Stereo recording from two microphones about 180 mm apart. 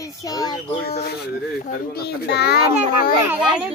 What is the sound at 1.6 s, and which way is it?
Speech, 60° left (ahead or behind).